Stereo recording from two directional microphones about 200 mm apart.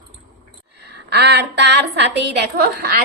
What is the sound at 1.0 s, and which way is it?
A woman's voice, 55° right (ahead or behind).